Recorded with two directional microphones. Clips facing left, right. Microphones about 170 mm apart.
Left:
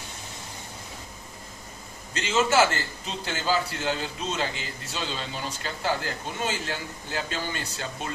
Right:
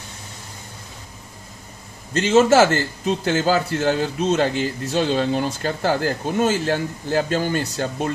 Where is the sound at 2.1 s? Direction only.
40° right (ahead or behind).